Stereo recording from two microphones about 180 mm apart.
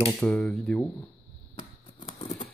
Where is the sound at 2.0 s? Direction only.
30° left (ahead or behind).